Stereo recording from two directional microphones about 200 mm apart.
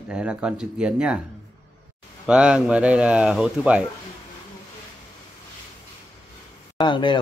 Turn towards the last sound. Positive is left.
turn(degrees=25)  # may be behind; listen again after turning